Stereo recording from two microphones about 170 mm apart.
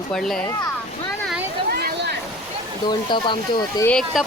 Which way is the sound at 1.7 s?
65° right (ahead or behind).